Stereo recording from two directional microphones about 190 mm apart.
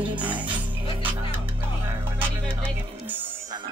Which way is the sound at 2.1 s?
10° right (ahead or behind).